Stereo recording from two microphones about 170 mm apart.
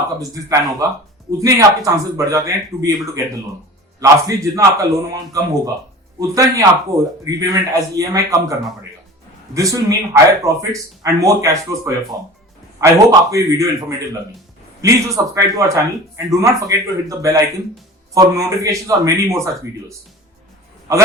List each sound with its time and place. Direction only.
0.2 s a man's voice: 20° right (ahead or behind)
4.0 s a man's voice: 20° right (ahead or behind)
9.6 s a man's voice: 20° right (ahead or behind)
14.8 s a man's voice: 20° right (ahead or behind)